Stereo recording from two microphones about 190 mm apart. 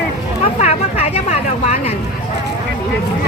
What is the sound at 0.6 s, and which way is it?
Vehicle, 35° left (ahead or behind).